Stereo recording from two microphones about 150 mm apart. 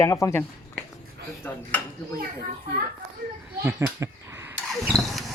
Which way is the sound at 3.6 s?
15° right (ahead or behind).